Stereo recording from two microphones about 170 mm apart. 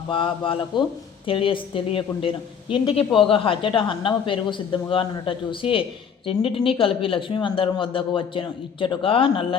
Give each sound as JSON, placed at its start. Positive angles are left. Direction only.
{"t": 0.1, "sound": "a woman's voice", "side_deg": 30}